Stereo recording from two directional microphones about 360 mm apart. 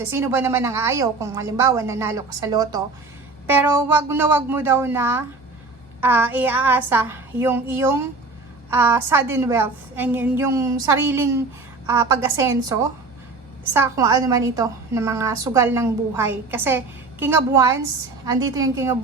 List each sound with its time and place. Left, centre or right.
0.0 s a woman's voice: centre
13.7 s a woman's voice: centre